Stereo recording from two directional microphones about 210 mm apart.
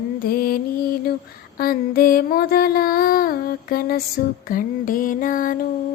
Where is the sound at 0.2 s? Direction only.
45° left (ahead or behind).